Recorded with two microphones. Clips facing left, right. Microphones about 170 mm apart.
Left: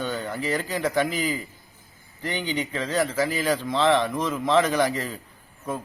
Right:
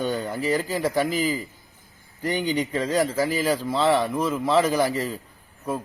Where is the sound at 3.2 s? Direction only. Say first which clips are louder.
Right 1 dB; 10° right (ahead or behind).